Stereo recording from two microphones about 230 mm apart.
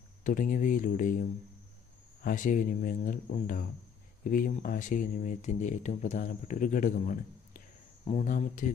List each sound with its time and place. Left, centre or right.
0.2 s speech: left
2.2 s speech: left